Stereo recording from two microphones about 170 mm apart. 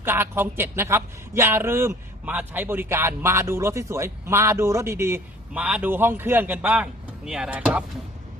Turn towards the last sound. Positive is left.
turn(degrees=-5)  # may be behind; listen again after turning